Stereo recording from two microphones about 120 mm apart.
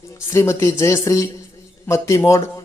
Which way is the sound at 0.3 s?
25° left (ahead or behind).